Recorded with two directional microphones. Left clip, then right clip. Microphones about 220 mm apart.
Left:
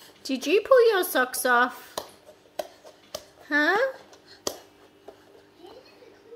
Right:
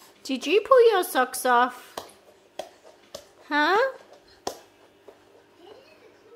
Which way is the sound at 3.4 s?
10° right (ahead or behind).